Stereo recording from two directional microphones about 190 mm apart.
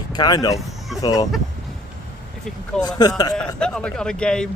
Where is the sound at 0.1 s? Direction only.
20° left (ahead or behind).